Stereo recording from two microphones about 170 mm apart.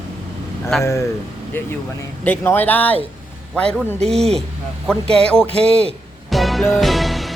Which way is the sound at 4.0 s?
40° right (ahead or behind).